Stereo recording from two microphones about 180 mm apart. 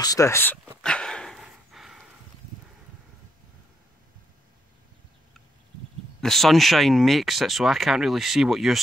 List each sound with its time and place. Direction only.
0.0 s speech: 20° left (ahead or behind)
0.8 s dog: 5° left (ahead or behind)
6.2 s speech: centre (ahead or behind)